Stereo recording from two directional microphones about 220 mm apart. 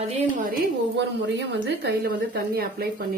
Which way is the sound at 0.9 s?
55° right (ahead or behind).